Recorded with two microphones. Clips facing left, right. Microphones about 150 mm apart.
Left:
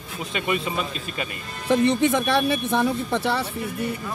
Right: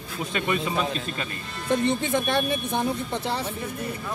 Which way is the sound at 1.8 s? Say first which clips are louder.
Left 6 dB; 85° left.